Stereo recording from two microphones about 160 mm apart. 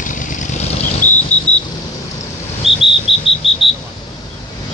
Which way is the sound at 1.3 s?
10° left (ahead or behind).